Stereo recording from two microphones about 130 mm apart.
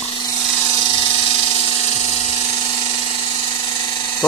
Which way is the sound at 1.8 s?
55° left (ahead or behind).